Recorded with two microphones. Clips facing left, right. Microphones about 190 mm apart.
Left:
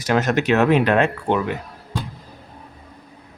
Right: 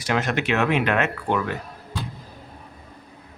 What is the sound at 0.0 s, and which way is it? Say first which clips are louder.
A man's voice: left 5 dB; 40° left (ahead or behind).